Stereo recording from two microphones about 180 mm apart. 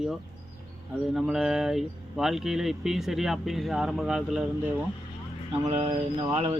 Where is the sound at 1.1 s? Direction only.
Centre (ahead or behind).